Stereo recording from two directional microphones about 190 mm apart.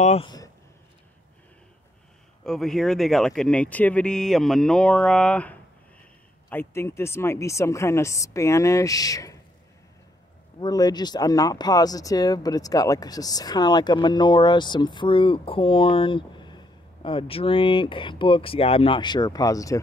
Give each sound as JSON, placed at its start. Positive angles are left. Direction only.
{"t": 0.0, "sound": "speech", "side_deg": 35}
{"t": 2.4, "sound": "speech", "side_deg": 0}
{"t": 10.6, "sound": "speech", "side_deg": 20}